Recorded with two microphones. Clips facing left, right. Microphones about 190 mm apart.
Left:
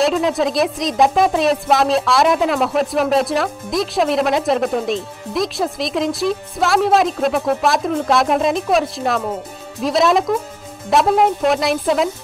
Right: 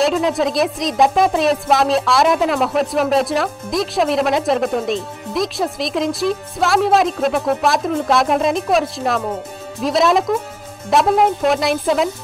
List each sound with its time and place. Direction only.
0.0 s speech: centre (ahead or behind)